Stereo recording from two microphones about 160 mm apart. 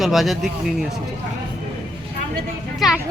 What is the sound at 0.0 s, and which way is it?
Speech, centre (ahead or behind).